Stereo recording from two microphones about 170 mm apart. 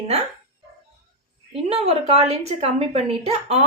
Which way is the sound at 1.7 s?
35° right (ahead or behind).